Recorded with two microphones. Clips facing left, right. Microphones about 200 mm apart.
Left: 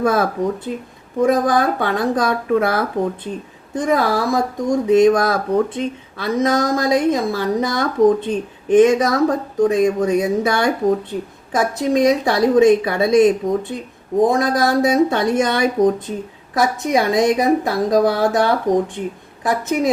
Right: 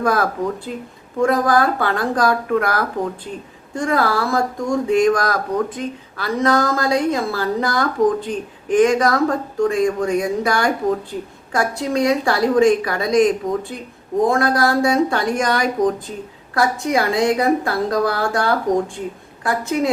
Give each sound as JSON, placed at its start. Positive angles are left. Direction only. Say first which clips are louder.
{"t": 0.0, "sound": "a woman's voice", "louder": "left 2 dB", "side_deg": 25}